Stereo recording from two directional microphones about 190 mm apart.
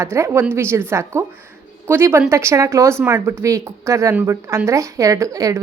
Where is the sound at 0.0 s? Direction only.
15° right (ahead or behind).